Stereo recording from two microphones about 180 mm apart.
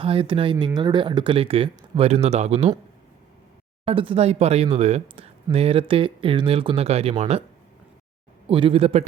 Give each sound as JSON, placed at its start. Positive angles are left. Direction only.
{"t": 0.0, "sound": "speech", "side_deg": -30}
{"t": 3.8, "sound": "speech", "side_deg": -30}
{"t": 8.4, "sound": "speech", "side_deg": -30}